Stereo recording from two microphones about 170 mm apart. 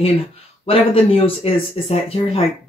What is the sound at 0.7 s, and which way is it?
Speech, 35° left (ahead or behind).